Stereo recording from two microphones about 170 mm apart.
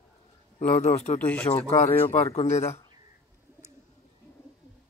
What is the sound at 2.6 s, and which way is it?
Speech, 15° left (ahead or behind).